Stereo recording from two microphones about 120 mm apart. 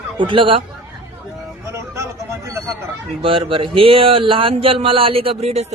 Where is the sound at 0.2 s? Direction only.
45° right (ahead or behind).